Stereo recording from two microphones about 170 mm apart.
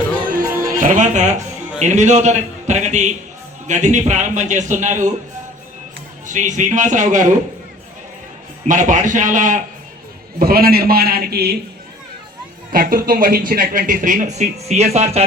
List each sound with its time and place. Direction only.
0.4 s music: 15° right (ahead or behind)
0.8 s speech: 50° right (ahead or behind)
6.2 s speech: 45° right (ahead or behind)
8.6 s speech: 50° right (ahead or behind)
10.3 s a man's voice: 65° right (ahead or behind)
12.7 s speech: 60° right (ahead or behind); by 15.2 s 40° right (ahead or behind)